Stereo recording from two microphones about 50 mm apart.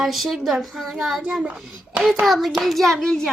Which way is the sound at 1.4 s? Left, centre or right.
Centre.